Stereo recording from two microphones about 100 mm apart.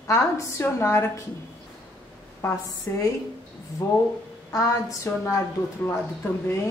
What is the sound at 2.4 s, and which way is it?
A woman's voice, 30° left (ahead or behind).